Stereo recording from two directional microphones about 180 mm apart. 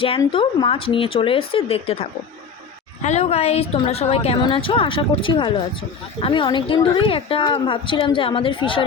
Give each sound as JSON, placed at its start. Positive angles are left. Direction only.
{"t": 0.3, "sound": "a woman's voice", "side_deg": 30}